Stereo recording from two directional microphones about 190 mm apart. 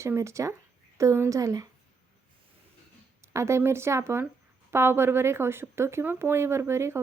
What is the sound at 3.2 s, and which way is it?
Speech, 15° right (ahead or behind).